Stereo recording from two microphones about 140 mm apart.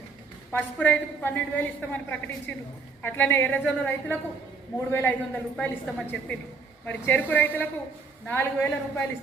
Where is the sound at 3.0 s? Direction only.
15° left (ahead or behind).